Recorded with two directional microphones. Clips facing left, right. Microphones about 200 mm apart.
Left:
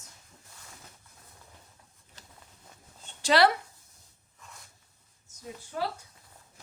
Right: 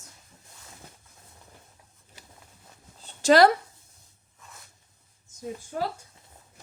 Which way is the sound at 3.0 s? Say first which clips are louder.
Right 5 dB; 45° right (ahead or behind).